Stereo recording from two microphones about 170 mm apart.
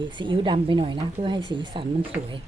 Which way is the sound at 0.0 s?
30° right (ahead or behind).